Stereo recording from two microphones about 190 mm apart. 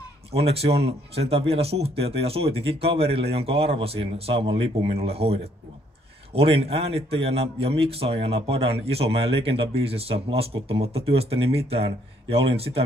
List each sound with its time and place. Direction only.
0.3 s a man's voice: 30° right (ahead or behind)